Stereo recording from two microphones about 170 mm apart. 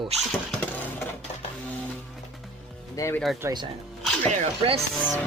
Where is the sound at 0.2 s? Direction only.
5° left (ahead or behind).